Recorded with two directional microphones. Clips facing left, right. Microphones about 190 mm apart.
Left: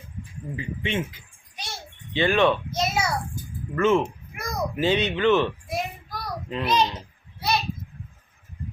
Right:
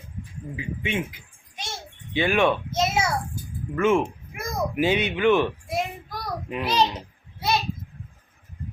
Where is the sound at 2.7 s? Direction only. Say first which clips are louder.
Right 2 dB; 25° right (ahead or behind).